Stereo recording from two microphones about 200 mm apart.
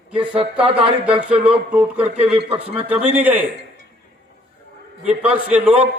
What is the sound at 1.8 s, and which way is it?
Speech, 30° right (ahead or behind).